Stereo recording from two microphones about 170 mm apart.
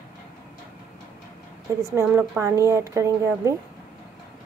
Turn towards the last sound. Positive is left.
turn(degrees=-15)  # may be behind; listen again after turning